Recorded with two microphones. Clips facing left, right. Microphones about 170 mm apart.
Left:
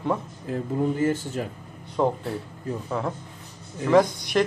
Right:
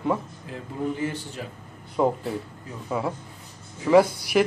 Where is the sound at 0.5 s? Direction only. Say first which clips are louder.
Left 5 dB; 45° left (ahead or behind).